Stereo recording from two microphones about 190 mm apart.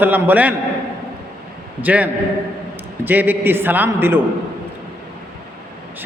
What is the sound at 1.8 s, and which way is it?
A man's voice, 10° right (ahead or behind).